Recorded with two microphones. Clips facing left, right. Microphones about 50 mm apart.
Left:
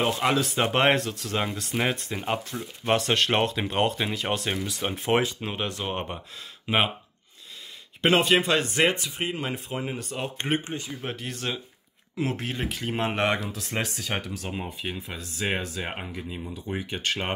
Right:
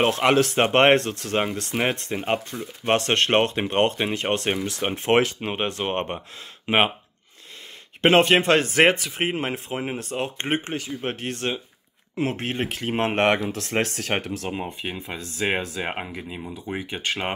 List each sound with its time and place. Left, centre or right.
0.0 s speech: right
0.6 s speech: right
2.1 s speech: right
2.8 s speech: right
5.4 s speech: right
6.7 s speech: right
8.0 s speech: right
9.3 s speech: right
10.6 s speech: right
11.0 s speech: right
14.8 s speech: centre